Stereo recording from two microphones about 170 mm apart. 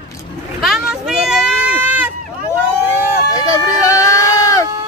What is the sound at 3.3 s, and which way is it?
Sheep, 20° left (ahead or behind).